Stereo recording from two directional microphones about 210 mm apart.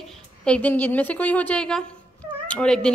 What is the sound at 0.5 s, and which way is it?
A woman's voice, 5° left (ahead or behind).